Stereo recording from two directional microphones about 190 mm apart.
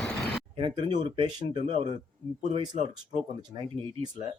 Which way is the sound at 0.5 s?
25° right (ahead or behind).